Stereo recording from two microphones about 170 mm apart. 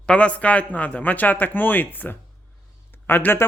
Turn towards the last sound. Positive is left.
turn(degrees=15)  # may be behind; listen again after turning